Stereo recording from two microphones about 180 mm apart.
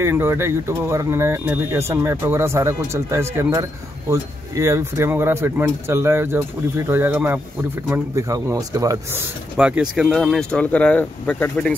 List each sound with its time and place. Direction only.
0.0 s speech: 15° right (ahead or behind)
9.6 s speech: 5° right (ahead or behind)